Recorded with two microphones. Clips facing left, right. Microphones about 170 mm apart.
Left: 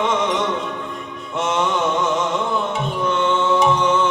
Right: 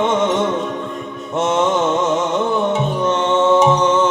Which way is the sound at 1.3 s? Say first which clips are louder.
Right 4 dB; 45° right (ahead or behind).